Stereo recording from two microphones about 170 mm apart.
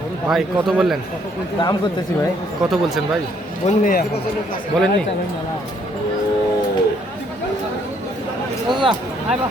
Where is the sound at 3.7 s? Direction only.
55° left (ahead or behind).